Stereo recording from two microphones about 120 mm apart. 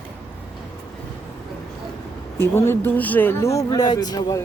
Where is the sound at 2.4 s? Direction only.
20° left (ahead or behind).